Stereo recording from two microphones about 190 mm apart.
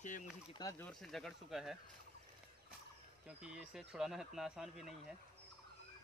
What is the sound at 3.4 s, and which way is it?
Speech, 5° right (ahead or behind).